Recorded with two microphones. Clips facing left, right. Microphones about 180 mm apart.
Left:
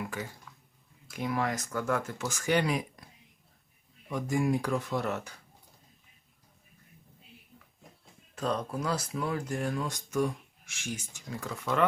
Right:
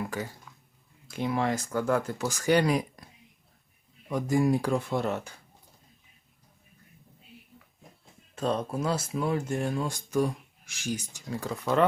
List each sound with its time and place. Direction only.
0.1 s speech: 40° right (ahead or behind)
1.1 s speech: 25° right (ahead or behind)
4.1 s speech: 35° right (ahead or behind)
8.4 s speech: 25° right (ahead or behind)